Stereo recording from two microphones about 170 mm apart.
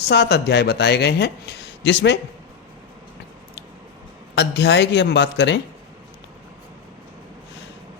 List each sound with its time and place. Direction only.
0.1 s speech: 75° left (ahead or behind); by 2.1 s 90° left
4.4 s speech: 90° left